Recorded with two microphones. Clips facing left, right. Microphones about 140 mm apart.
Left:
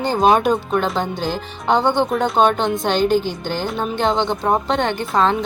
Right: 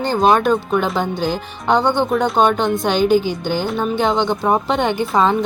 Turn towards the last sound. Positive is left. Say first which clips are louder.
# right 2 dB
turn(degrees=-10)  # may be behind; listen again after turning